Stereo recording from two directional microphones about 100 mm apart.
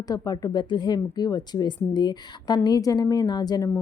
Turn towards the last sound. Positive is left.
turn(degrees=35)  # may be behind; listen again after turning